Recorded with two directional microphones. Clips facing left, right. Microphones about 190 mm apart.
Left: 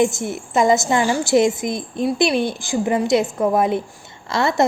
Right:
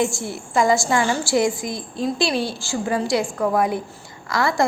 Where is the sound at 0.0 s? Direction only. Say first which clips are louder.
Left 4 dB; 20° left (ahead or behind).